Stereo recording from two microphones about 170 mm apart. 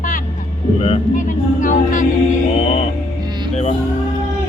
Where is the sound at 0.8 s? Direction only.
40° left (ahead or behind).